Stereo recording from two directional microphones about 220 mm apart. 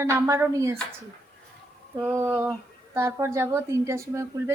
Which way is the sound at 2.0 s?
10° right (ahead or behind).